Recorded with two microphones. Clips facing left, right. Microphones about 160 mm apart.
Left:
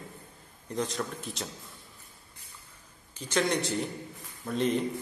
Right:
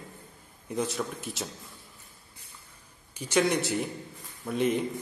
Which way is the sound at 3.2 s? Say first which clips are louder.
Right 3 dB; 10° right (ahead or behind).